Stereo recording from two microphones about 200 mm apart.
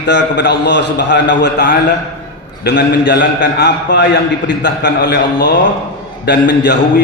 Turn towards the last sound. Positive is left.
turn(degrees=60)  # may be behind; listen again after turning